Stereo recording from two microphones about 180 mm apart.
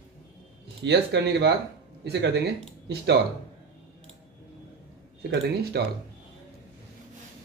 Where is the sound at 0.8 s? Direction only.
70° right (ahead or behind).